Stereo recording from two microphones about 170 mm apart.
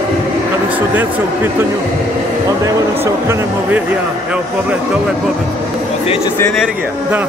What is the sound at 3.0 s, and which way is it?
Speech, 15° right (ahead or behind).